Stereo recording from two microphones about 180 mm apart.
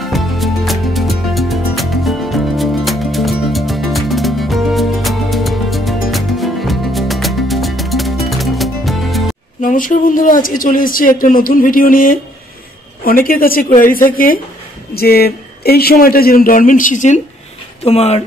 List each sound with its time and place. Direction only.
0.0 s music: centre (ahead or behind)
9.6 s a man's voice: 50° left (ahead or behind)